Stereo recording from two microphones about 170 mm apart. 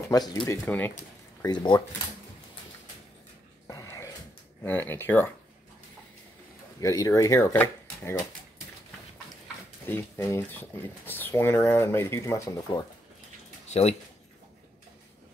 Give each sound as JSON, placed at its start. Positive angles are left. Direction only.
{"t": 0.1, "sound": "speech", "side_deg": 25}
{"t": 0.7, "sound": "speech", "side_deg": 10}
{"t": 1.4, "sound": "speech", "side_deg": 25}
{"t": 3.6, "sound": "a sound", "side_deg": 20}
{"t": 4.6, "sound": "speech", "side_deg": 10}
{"t": 6.8, "sound": "speech", "side_deg": 20}
{"t": 9.8, "sound": "speech", "side_deg": 15}
{"t": 13.7, "sound": "speech", "side_deg": 40}